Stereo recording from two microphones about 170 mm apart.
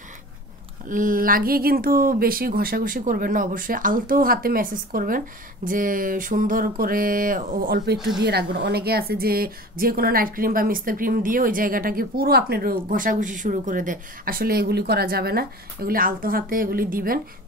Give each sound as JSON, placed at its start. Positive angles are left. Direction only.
{"t": 0.8, "sound": "speech", "side_deg": -50}